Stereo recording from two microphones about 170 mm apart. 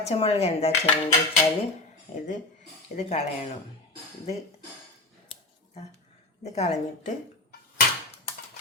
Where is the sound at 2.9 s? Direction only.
40° left (ahead or behind).